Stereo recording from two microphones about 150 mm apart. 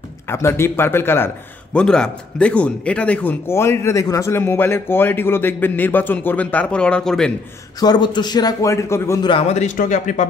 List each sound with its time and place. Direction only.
0.3 s a man's voice: 15° left (ahead or behind)
7.8 s a man's voice: 30° left (ahead or behind)
9.5 s speech: 50° left (ahead or behind)